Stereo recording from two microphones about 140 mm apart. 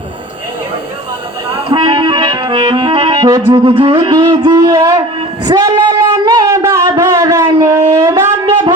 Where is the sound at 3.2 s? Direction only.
25° right (ahead or behind).